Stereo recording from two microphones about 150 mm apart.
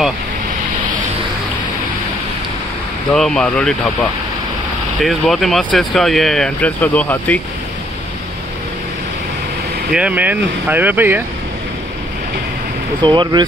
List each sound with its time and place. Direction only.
3.1 s speech: 5° left (ahead or behind)
5.0 s speech: centre (ahead or behind)
9.9 s speech: 10° right (ahead or behind)
13.0 s speech: 30° right (ahead or behind)